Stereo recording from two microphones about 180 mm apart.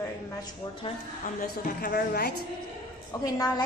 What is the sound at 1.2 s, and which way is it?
A woman's voice, 50° left (ahead or behind).